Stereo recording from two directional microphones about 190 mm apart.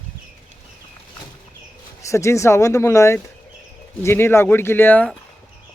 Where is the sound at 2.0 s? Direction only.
15° left (ahead or behind).